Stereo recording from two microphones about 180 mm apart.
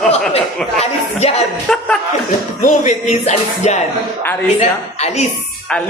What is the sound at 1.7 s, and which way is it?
Speech, 5° left (ahead or behind).